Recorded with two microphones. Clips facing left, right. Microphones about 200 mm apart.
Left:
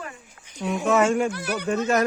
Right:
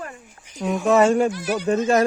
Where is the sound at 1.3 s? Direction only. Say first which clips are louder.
Right 4 dB; 60° left (ahead or behind).